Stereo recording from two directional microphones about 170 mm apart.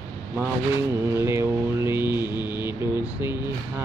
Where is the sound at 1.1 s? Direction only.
15° right (ahead or behind).